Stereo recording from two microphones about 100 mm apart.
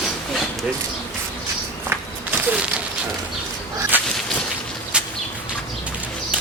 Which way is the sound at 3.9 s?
20° right (ahead or behind).